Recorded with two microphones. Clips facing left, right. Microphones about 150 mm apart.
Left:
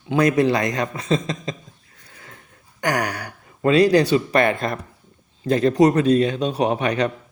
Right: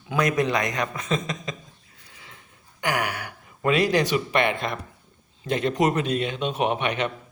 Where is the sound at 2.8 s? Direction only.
40° left (ahead or behind).